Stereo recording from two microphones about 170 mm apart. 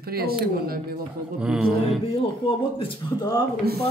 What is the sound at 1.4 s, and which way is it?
Speech, 5° right (ahead or behind).